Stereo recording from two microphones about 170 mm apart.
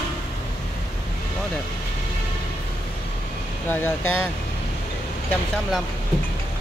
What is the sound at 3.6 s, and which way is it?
Speech, 10° left (ahead or behind).